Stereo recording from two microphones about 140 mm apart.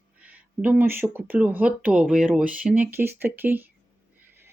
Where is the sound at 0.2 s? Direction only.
10° right (ahead or behind).